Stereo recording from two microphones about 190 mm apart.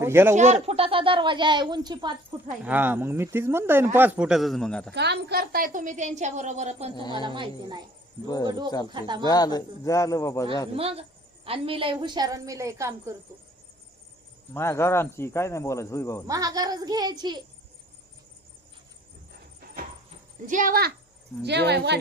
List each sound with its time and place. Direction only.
0.0 s speech: 15° right (ahead or behind)
0.3 s speech: 35° right (ahead or behind)
2.6 s a man's voice: 10° right (ahead or behind)
4.9 s a woman's voice: 60° right (ahead or behind); by 6.9 s 35° right (ahead or behind)
7.1 s speech: 25° right (ahead or behind)
9.2 s speech: 20° left (ahead or behind)
10.8 s a woman's voice: 30° right (ahead or behind); by 13.1 s 15° right (ahead or behind)
14.5 s speech: 15° left (ahead or behind)
16.2 s speech: 20° right (ahead or behind)
20.5 s speech: 45° right (ahead or behind)
21.4 s speech: 60° right (ahead or behind)